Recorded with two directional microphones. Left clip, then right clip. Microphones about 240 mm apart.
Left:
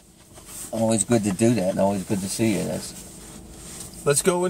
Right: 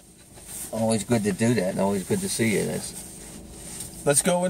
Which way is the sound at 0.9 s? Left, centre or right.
Centre.